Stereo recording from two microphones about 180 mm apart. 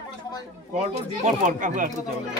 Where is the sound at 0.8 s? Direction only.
40° right (ahead or behind).